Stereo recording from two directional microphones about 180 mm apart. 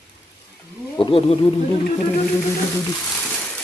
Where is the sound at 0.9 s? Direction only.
30° left (ahead or behind).